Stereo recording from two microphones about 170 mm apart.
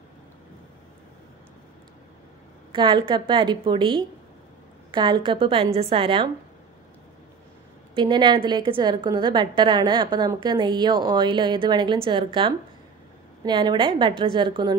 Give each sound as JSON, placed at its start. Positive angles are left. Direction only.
{"t": 2.7, "sound": "a woman's voice", "side_deg": -25}
{"t": 7.9, "sound": "a woman's voice", "side_deg": -25}
{"t": 13.5, "sound": "a woman's voice", "side_deg": -25}